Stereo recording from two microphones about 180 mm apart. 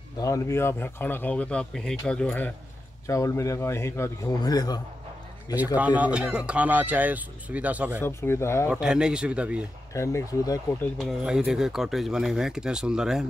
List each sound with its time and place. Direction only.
0.2 s speech: 15° left (ahead or behind)
5.8 s speech: 10° right (ahead or behind)
8.0 s speech: 15° left (ahead or behind)
8.6 s speech: 5° right (ahead or behind)
9.9 s speech: 15° left (ahead or behind)
11.0 s speech: centre (ahead or behind)